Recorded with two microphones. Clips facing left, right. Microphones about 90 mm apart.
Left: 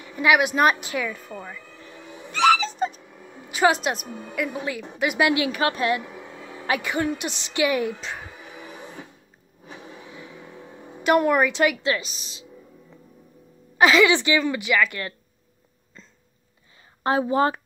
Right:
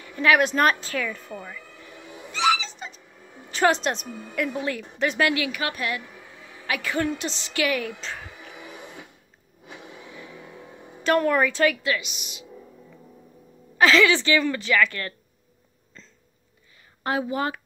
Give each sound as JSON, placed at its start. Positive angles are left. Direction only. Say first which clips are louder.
{"t": 0.0, "sound": "a woman's voice", "louder": "even", "side_deg": 15}
{"t": 2.3, "sound": "dog", "louder": "left 4 dB", "side_deg": 50}
{"t": 3.4, "sound": "a woman's voice", "louder": "left 1 dB", "side_deg": 10}
{"t": 5.4, "sound": "a woman's voice", "louder": "left 5 dB", "side_deg": 30}
{"t": 6.3, "sound": "music", "louder": "left 4 dB", "side_deg": 35}
{"t": 6.9, "sound": "a woman's voice", "louder": "left 1 dB", "side_deg": 15}
{"t": 8.5, "sound": "printer", "louder": "left 1 dB", "side_deg": 25}
{"t": 9.9, "sound": "vehicle", "louder": "left 1 dB", "side_deg": 25}
{"t": 11.1, "sound": "a woman's voice", "louder": "left 2 dB", "side_deg": 15}
{"t": 11.8, "sound": "a woman's voice", "louder": "left 2 dB", "side_deg": 30}
{"t": 13.7, "sound": "a woman's voice", "louder": "left 1 dB", "side_deg": 20}
{"t": 16.0, "sound": "a sound", "louder": "left 1 dB", "side_deg": 10}
{"t": 17.0, "sound": "a woman's voice", "louder": "left 5 dB", "side_deg": 30}